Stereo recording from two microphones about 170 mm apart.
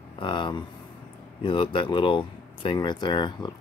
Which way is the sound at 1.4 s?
30° left (ahead or behind).